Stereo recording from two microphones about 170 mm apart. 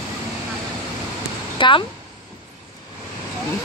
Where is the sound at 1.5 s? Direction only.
30° left (ahead or behind).